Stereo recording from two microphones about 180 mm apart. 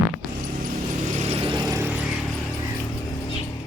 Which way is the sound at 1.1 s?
40° right (ahead or behind).